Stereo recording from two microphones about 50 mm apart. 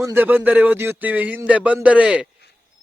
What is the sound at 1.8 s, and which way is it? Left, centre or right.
Speech, right.